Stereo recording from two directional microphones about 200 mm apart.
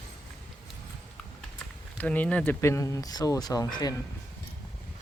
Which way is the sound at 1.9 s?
10° left (ahead or behind).